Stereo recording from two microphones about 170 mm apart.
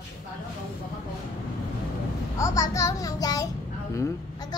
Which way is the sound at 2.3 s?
20° left (ahead or behind).